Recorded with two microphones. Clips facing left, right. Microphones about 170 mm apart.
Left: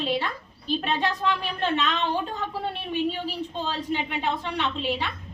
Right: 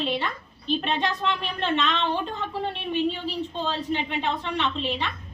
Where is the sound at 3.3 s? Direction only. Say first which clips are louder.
Right 2 dB; 10° left (ahead or behind).